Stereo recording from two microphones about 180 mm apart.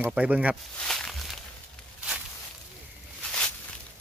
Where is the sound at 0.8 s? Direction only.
5° left (ahead or behind).